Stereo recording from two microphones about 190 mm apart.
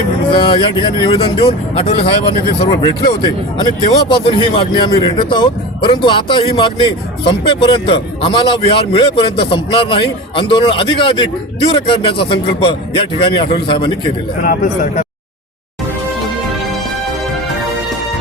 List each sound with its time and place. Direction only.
0.3 s speech: 25° left (ahead or behind)
14.4 s a man's voice: 45° left (ahead or behind)